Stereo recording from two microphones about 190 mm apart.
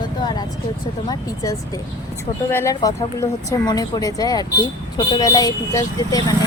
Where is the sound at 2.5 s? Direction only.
15° left (ahead or behind).